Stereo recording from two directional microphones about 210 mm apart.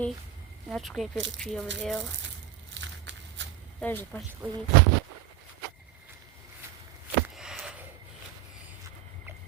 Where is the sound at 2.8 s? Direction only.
60° right (ahead or behind).